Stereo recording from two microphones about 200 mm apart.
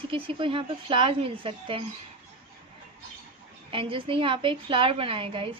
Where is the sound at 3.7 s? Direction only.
25° right (ahead or behind).